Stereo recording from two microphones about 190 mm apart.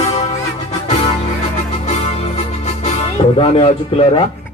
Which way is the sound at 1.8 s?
35° left (ahead or behind).